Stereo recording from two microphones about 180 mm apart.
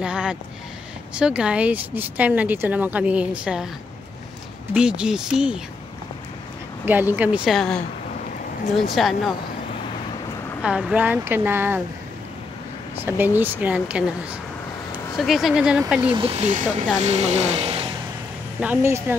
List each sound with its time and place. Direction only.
0.0 s a sound: 5° right (ahead or behind)
1.1 s speech: 5° right (ahead or behind)
4.7 s speech: 5° right (ahead or behind)
6.9 s speech: 10° right (ahead or behind)
8.9 s speech: centre (ahead or behind)
10.6 s speech: 5° right (ahead or behind)
13.0 s speech: 10° right (ahead or behind)
16.0 s speech: 30° right (ahead or behind)
18.6 s speech: 10° right (ahead or behind)